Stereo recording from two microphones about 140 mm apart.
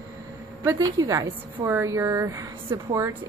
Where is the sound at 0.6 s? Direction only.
25° right (ahead or behind).